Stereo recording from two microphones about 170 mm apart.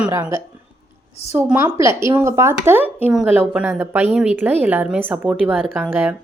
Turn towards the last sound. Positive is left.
turn(degrees=-10)  # may be behind; listen again after turning